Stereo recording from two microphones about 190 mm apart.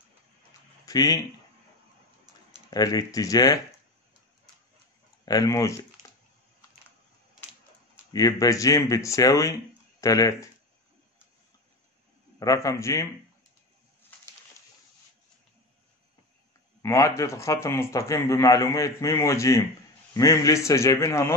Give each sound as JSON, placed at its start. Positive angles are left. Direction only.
{"t": 0.8, "sound": "speech", "side_deg": 15}
{"t": 2.7, "sound": "speech", "side_deg": 20}
{"t": 5.2, "sound": "speech", "side_deg": 20}
{"t": 8.1, "sound": "speech", "side_deg": 20}
{"t": 12.4, "sound": "speech", "side_deg": 20}
{"t": 16.8, "sound": "speech", "side_deg": 15}